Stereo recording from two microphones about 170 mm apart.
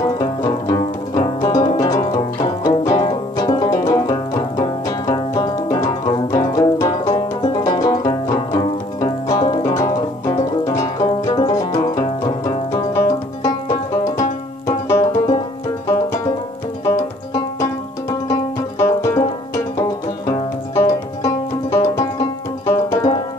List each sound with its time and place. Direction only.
0.2 s music: 20° left (ahead or behind)
14.7 s banjo: 20° left (ahead or behind)
16.8 s banjo: 20° left (ahead or behind)
20.7 s music: 20° left (ahead or behind)